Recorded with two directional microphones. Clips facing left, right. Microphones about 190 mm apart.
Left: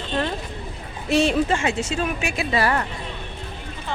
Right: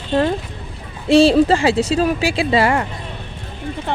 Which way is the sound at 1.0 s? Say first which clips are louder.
Right 8 dB; 30° right (ahead or behind).